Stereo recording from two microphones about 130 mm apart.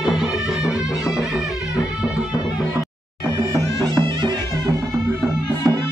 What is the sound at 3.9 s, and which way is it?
Music, 35° right (ahead or behind).